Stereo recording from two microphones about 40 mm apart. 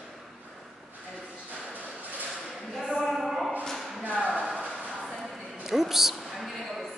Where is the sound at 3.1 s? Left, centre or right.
Centre.